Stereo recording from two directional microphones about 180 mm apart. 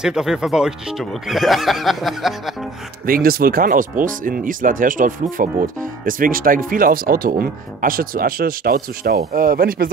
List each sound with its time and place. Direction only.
0.0 s speech: 5° right (ahead or behind)
3.1 s speech: 55° right (ahead or behind)